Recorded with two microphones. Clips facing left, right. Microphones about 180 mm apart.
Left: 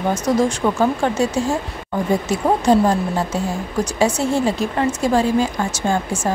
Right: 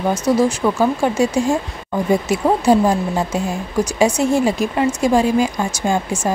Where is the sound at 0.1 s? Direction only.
10° right (ahead or behind).